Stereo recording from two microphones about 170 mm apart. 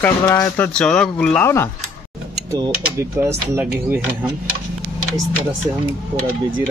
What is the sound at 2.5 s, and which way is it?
Speech, 20° right (ahead or behind).